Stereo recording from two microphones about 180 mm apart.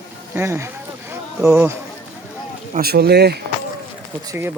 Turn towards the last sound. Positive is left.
turn(degrees=-10)  # may be behind; listen again after turning